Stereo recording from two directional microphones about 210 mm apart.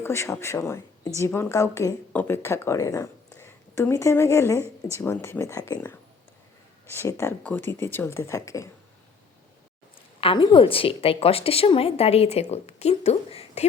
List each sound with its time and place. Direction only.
0.0 s speech: 15° left (ahead or behind)
10.2 s a woman's voice: 25° left (ahead or behind)